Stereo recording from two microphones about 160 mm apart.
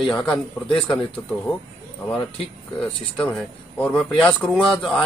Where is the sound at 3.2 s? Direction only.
10° left (ahead or behind).